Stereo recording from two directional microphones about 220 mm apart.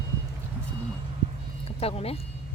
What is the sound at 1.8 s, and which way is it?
Speech, 25° left (ahead or behind).